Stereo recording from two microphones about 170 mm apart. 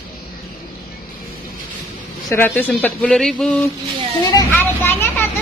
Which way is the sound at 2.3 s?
10° left (ahead or behind).